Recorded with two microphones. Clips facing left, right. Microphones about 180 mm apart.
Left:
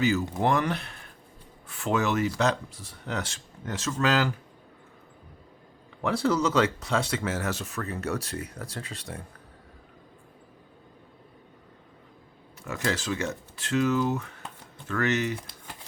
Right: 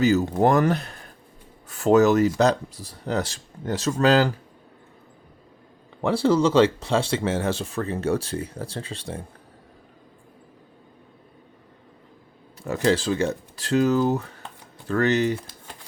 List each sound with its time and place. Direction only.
0.0 s speech: 40° right (ahead or behind)
6.0 s speech: 30° right (ahead or behind)
12.6 s speech: 35° right (ahead or behind)